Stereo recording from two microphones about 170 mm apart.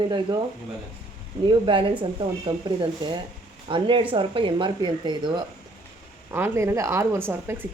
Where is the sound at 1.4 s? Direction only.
30° right (ahead or behind).